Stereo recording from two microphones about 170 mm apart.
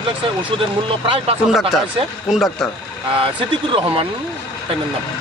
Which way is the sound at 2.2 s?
Centre (ahead or behind).